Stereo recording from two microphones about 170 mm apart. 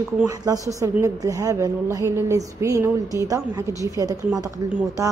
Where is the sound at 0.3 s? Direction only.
20° right (ahead or behind).